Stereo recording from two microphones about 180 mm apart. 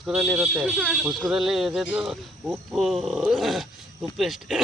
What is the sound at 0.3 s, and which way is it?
Speech, 15° right (ahead or behind).